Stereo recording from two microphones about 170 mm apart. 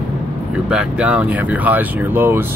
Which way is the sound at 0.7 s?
5° right (ahead or behind).